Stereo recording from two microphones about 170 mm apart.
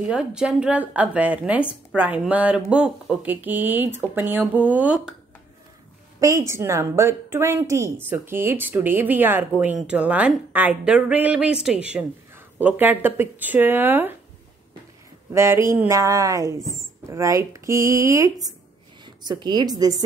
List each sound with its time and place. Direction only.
0.0 s a woman's voice: 5° right (ahead or behind)
6.1 s a woman's voice: 20° right (ahead or behind)
15.3 s a woman's voice: 15° right (ahead or behind)